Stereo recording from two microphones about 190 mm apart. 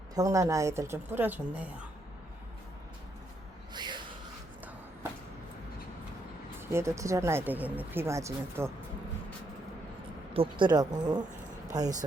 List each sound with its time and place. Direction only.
0.1 s speech: 15° right (ahead or behind)
3.7 s gasp: 25° right (ahead or behind)
6.6 s speech: 15° right (ahead or behind)
10.3 s speech: 25° right (ahead or behind)